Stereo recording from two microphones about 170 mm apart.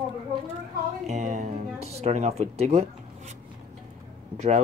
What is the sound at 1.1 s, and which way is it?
Speech, 40° right (ahead or behind).